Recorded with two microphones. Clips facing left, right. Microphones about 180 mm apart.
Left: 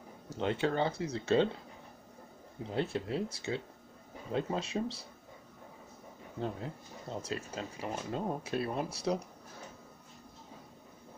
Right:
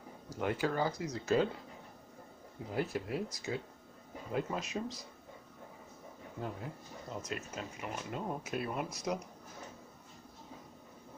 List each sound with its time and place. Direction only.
0.3 s speech: 25° left (ahead or behind)
2.7 s speech: 25° left (ahead or behind)
6.4 s speech: 30° left (ahead or behind)